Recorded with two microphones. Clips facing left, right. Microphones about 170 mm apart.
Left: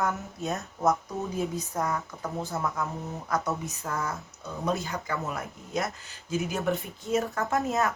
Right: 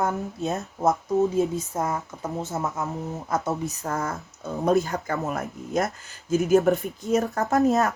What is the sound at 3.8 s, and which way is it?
Speech, 45° right (ahead or behind).